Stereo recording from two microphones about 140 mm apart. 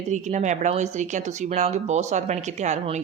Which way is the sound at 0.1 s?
60° right (ahead or behind).